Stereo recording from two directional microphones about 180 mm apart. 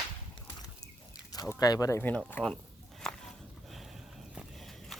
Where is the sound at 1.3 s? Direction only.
20° left (ahead or behind).